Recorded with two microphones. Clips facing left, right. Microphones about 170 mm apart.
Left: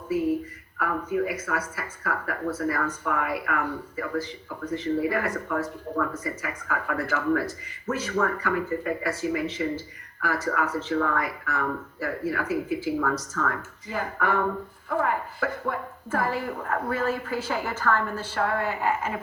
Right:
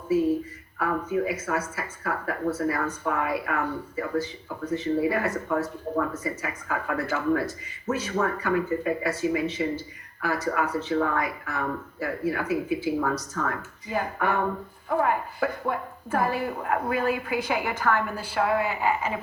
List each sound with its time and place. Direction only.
0.1 s a woman's voice: 25° right (ahead or behind); by 19.2 s centre (ahead or behind)